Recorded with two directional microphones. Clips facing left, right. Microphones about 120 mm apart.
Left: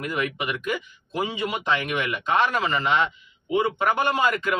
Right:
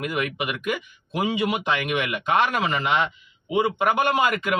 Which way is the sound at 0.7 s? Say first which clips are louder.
Right 1 dB; 15° right (ahead or behind).